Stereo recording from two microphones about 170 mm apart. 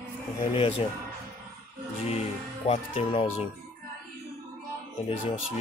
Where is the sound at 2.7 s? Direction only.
35° left (ahead or behind).